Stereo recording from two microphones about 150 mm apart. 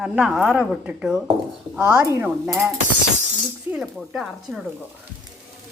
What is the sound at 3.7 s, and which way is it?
Speech, centre (ahead or behind).